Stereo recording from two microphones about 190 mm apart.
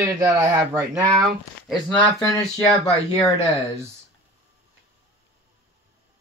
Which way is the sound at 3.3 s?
15° right (ahead or behind).